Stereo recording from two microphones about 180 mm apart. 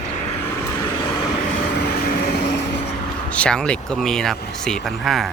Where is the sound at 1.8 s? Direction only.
60° left (ahead or behind); by 2.8 s 75° left (ahead or behind).